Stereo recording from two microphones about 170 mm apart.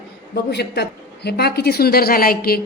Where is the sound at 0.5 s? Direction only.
80° left; by 2.6 s 60° left (ahead or behind).